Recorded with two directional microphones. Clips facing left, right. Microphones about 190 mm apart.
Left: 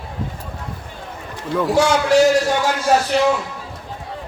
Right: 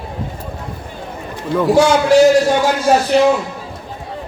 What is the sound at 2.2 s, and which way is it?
A man's voice, 20° right (ahead or behind).